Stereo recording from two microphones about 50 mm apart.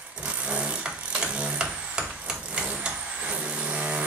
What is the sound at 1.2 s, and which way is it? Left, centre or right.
Vehicle, right.